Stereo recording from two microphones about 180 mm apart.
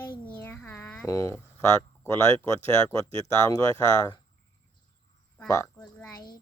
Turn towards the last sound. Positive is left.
turn(degrees=20)  # may be behind; listen again after turning